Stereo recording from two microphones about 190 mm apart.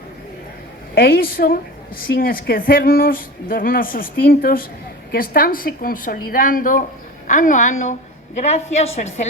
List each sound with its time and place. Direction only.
0.9 s a woman's voice: 55° left (ahead or behind)
9.0 s speech: 45° left (ahead or behind)